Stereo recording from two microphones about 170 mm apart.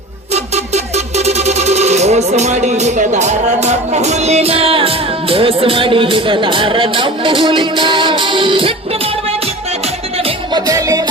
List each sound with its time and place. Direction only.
0.3 s speech: 40° right (ahead or behind)
10.2 s music: 25° right (ahead or behind)